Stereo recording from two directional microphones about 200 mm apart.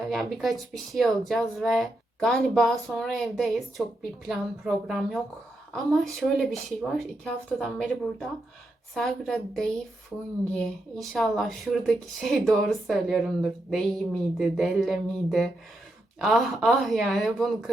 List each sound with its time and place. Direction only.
0.1 s a woman's voice: centre (ahead or behind)
9.0 s a woman's voice: centre (ahead or behind)